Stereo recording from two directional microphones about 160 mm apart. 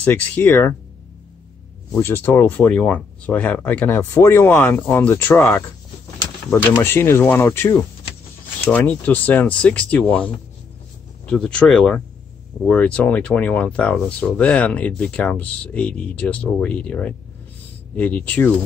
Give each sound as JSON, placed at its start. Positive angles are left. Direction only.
{"t": 0.0, "sound": "speech", "side_deg": 10}
{"t": 1.9, "sound": "speech", "side_deg": 15}
{"t": 6.8, "sound": "speech", "side_deg": 15}